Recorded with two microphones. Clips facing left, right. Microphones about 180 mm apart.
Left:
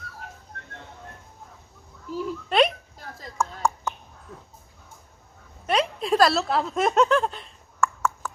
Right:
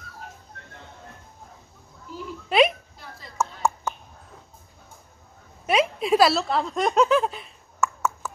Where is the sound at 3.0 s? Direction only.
45° left (ahead or behind).